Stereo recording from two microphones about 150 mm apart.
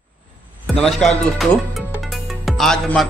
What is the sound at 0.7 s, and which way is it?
Speech, 5° left (ahead or behind).